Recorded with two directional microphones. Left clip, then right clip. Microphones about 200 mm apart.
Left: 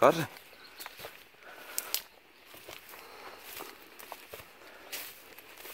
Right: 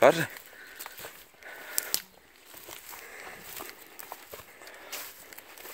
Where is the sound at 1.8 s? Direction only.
55° right (ahead or behind).